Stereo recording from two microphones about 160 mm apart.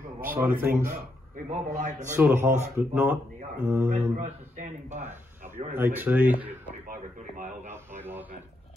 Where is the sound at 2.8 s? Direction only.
10° right (ahead or behind).